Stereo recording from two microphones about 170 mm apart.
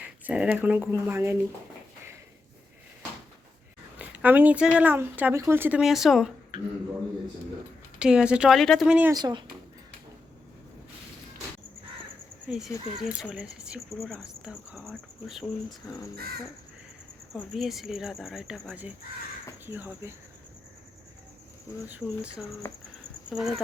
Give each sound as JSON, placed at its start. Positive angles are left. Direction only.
{"t": 0.0, "sound": "speech", "side_deg": -10}
{"t": 3.9, "sound": "speech", "side_deg": -10}
{"t": 5.8, "sound": "speech", "side_deg": 0}
{"t": 7.9, "sound": "speech", "side_deg": -5}
{"t": 9.1, "sound": "speech", "side_deg": -25}
{"t": 12.5, "sound": "speech", "side_deg": -5}
{"t": 16.1, "sound": "crow", "side_deg": -60}
{"t": 17.3, "sound": "speech", "side_deg": 0}
{"t": 21.8, "sound": "speech", "side_deg": -10}
{"t": 22.6, "sound": "speech", "side_deg": 15}
{"t": 23.3, "sound": "speech", "side_deg": 0}